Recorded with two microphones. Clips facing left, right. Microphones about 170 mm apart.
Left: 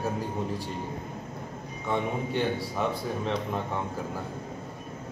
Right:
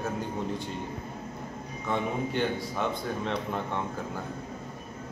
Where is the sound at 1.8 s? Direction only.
Centre (ahead or behind).